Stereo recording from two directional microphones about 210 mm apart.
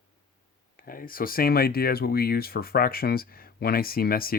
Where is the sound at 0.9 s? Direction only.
45° left (ahead or behind).